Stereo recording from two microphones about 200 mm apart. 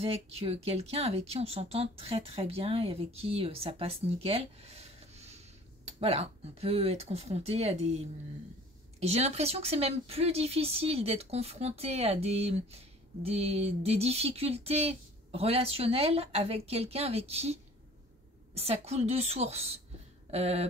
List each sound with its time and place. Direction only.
0.0 s speech: 30° right (ahead or behind)
9.0 s speech: 30° right (ahead or behind)